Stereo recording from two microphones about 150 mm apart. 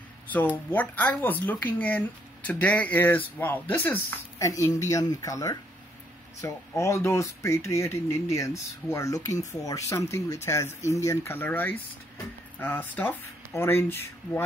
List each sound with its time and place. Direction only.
0.7 s speech: 15° left (ahead or behind)